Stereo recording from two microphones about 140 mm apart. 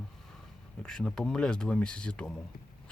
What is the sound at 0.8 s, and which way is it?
Speech, 5° left (ahead or behind).